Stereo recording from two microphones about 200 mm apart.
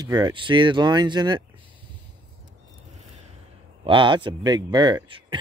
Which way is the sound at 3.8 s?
25° right (ahead or behind).